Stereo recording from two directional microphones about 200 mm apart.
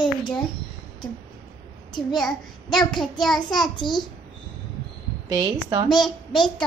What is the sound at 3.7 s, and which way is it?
Speech, 20° left (ahead or behind).